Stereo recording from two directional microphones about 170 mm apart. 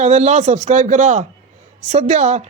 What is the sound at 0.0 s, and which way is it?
A woman's voice, 40° right (ahead or behind).